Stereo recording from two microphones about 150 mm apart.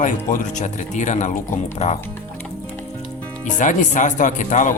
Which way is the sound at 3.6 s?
55° left (ahead or behind).